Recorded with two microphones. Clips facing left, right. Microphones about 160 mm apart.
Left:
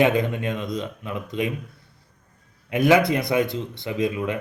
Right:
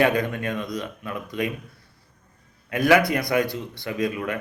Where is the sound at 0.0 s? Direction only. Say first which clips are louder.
Left 1 dB; 20° left (ahead or behind).